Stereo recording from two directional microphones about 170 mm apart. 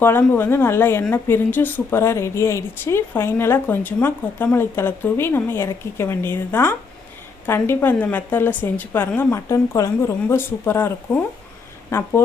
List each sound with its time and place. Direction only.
0.0 s a woman's voice: 15° left (ahead or behind)